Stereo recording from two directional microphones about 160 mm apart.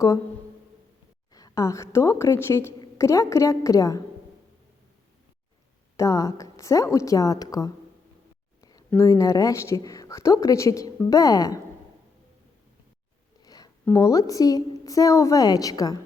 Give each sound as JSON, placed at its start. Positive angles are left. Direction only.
{"t": 1.3, "sound": "a woman's voice", "side_deg": 25}
{"t": 6.0, "sound": "a woman's voice", "side_deg": 20}
{"t": 8.9, "sound": "a woman's voice", "side_deg": 20}
{"t": 13.4, "sound": "a sound", "side_deg": 25}
{"t": 13.8, "sound": "a woman's voice", "side_deg": 15}